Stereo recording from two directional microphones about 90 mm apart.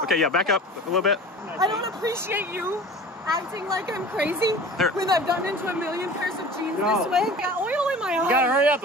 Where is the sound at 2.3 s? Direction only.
20° right (ahead or behind).